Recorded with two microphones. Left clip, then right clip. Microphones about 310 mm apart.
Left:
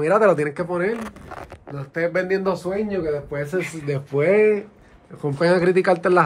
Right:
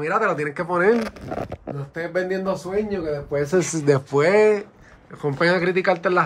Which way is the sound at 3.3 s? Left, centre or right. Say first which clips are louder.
Right 4 dB; right.